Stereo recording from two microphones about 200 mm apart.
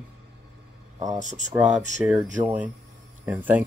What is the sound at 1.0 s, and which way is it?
Speech, 35° right (ahead or behind).